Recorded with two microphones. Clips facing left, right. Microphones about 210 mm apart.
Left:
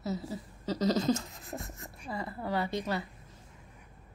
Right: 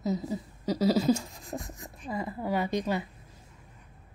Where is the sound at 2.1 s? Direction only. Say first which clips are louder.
Right 3 dB; 15° right (ahead or behind).